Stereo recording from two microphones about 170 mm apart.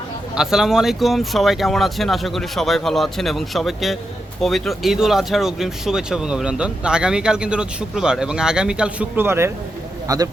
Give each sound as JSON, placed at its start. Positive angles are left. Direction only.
{"t": 0.3, "sound": "a man's voice", "side_deg": -5}